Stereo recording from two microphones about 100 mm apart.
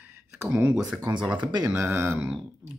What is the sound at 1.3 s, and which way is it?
Speech, 50° right (ahead or behind).